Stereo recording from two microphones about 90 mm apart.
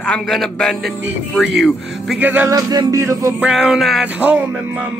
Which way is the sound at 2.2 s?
20° right (ahead or behind).